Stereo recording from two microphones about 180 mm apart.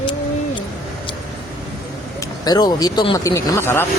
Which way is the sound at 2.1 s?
20° left (ahead or behind).